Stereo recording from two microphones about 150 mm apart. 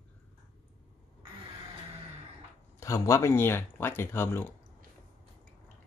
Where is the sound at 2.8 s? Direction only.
20° left (ahead or behind).